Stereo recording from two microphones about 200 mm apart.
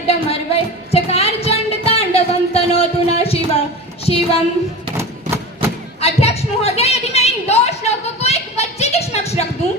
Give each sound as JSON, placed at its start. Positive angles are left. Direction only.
{"t": 0.1, "sound": "music", "side_deg": 30}
{"t": 4.0, "sound": "a woman's voice", "side_deg": 30}
{"t": 6.0, "sound": "a sound", "side_deg": 30}